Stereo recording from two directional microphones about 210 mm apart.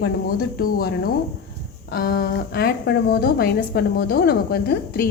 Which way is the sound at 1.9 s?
45° left (ahead or behind).